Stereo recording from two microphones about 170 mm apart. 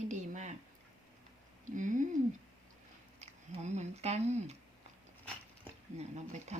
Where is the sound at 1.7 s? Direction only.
50° right (ahead or behind).